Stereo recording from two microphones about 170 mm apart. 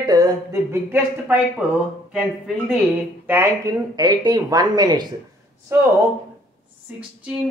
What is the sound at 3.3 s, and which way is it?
A woman's voice, 15° right (ahead or behind).